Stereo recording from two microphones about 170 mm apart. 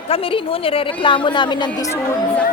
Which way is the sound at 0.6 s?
30° left (ahead or behind).